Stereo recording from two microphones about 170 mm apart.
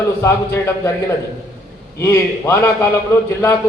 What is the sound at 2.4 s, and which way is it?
Speech, 15° left (ahead or behind).